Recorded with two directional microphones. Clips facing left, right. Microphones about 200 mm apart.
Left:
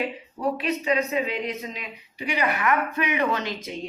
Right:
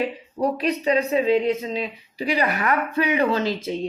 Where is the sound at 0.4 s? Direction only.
40° right (ahead or behind).